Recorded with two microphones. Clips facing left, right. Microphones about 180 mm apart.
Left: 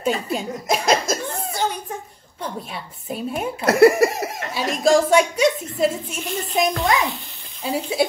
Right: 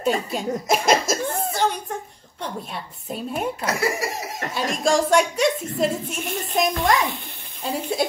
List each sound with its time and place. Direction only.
0.0 s a woman's voice: centre (ahead or behind)
1.5 s a sound: centre (ahead or behind)
2.4 s a woman's voice: centre (ahead or behind)
3.6 s speech: 60° left (ahead or behind)
4.6 s a woman's voice: 5° left (ahead or behind)